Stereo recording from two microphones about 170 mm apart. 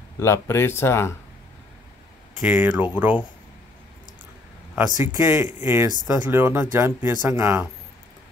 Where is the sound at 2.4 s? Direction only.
10° right (ahead or behind).